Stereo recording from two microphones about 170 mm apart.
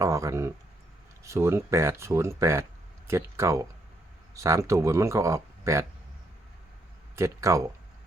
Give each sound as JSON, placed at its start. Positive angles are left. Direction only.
{"t": 0.0, "sound": "speech", "side_deg": -20}
{"t": 7.2, "sound": "speech", "side_deg": -15}